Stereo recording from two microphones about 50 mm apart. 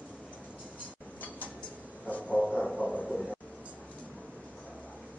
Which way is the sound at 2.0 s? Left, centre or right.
Left.